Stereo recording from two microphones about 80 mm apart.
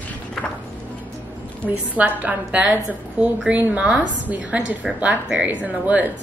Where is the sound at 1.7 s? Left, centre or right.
Centre.